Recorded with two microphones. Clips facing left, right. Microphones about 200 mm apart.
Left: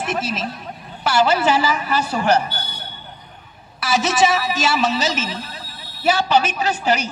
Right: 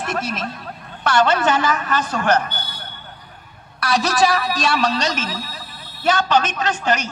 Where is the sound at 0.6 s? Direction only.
10° left (ahead or behind).